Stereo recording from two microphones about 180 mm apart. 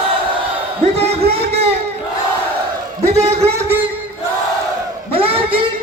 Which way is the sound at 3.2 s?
35° right (ahead or behind).